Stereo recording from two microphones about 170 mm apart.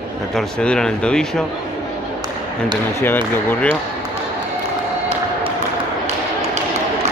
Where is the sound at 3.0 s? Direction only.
10° left (ahead or behind).